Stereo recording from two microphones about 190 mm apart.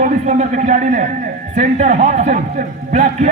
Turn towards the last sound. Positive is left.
turn(degrees=-40)  # may be behind; listen again after turning